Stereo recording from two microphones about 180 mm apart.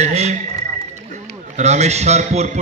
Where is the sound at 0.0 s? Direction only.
40° right (ahead or behind).